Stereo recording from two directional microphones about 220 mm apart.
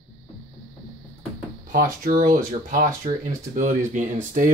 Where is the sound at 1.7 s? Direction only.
40° right (ahead or behind).